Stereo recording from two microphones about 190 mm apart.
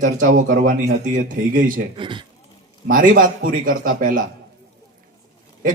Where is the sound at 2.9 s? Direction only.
45° right (ahead or behind).